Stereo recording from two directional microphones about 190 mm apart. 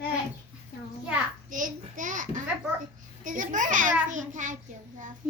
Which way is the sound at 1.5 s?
45° right (ahead or behind).